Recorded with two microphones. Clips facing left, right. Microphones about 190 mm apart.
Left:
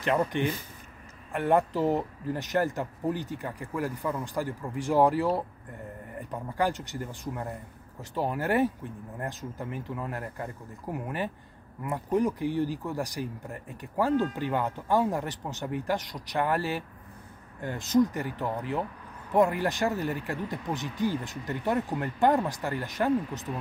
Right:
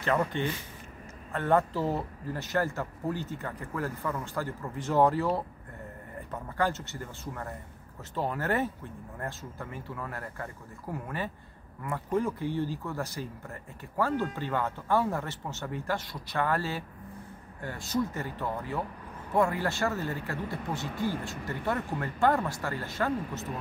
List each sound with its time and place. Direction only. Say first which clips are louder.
1.3 s speech: left 2 dB; 15° left (ahead or behind)